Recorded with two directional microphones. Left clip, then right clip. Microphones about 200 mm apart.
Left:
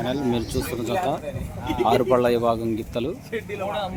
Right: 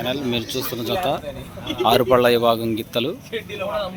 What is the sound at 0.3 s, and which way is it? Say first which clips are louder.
Speech: right 1 dB; 20° left (ahead or behind).